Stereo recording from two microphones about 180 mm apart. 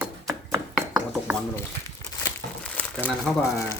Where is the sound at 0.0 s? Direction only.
15° right (ahead or behind).